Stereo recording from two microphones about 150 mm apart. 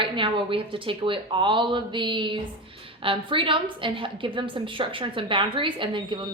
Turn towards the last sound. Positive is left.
turn(degrees=-35)  # may be behind; listen again after turning